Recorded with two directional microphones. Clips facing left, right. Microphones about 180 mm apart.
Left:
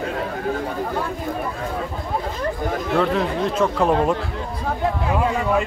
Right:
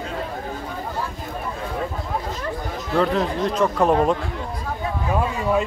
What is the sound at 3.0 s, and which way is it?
Speech, centre (ahead or behind).